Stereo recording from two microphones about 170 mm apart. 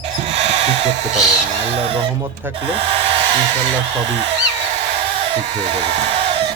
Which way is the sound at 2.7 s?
35° right (ahead or behind).